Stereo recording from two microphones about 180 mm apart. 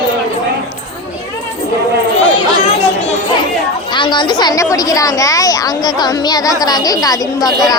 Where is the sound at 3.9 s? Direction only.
25° left (ahead or behind).